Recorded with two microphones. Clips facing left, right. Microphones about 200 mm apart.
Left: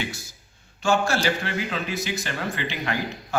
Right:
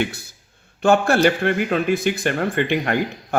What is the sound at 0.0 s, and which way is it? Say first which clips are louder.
A man's voice: right 8 dB; 60° right (ahead or behind).